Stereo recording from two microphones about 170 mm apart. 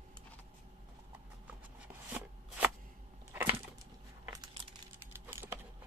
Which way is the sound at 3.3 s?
15° right (ahead or behind).